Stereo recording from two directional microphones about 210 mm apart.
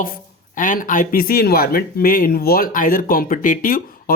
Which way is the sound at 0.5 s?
40° left (ahead or behind).